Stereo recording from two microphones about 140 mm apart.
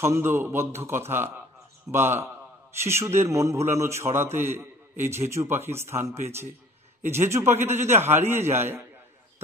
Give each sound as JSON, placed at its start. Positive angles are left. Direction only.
{"t": 0.0, "sound": "a man's voice", "side_deg": -20}